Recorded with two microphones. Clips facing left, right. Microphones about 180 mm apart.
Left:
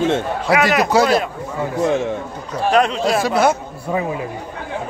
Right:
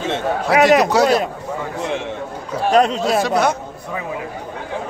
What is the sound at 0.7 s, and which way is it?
Speech, centre (ahead or behind).